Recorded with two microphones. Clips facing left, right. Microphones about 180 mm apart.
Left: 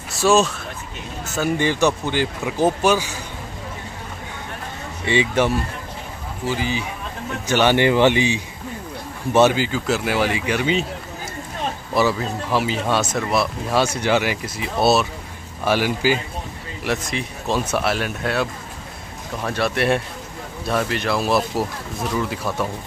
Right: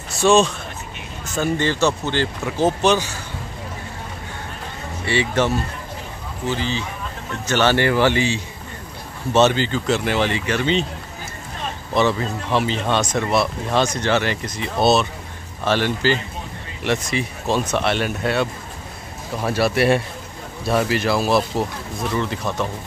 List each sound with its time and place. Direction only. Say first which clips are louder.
0.1 s speech: right 1 dB; centre (ahead or behind)
5.0 s speech: left 1 dB; 15° left (ahead or behind)
11.9 s speech: right 1 dB; 5° left (ahead or behind)